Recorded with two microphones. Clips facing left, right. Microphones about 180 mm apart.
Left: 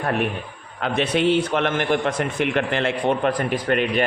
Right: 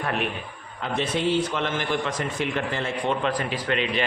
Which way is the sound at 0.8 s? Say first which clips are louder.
Left 5 dB; 70° left (ahead or behind).